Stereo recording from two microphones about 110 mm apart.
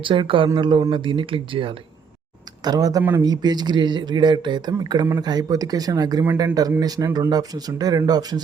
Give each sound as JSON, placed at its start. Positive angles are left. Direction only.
{"t": 0.0, "sound": "speech", "side_deg": -50}
{"t": 2.6, "sound": "speech", "side_deg": -35}